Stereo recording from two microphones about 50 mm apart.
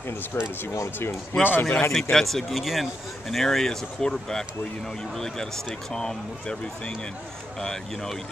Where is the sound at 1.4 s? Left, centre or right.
Left.